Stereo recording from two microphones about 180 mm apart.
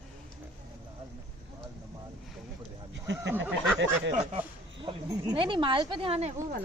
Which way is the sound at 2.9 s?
75° right (ahead or behind).